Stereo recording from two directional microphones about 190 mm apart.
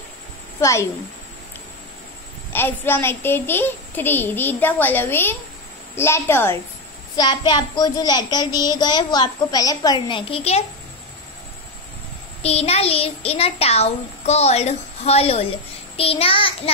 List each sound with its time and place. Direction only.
0.6 s a woman's voice: 15° left (ahead or behind)
2.5 s a child's voice: 10° left (ahead or behind); by 10.6 s 30° left (ahead or behind)
12.4 s a child's voice: 35° left (ahead or behind)